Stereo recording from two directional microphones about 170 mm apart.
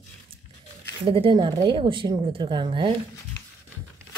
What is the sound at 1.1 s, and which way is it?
Speech, 30° right (ahead or behind).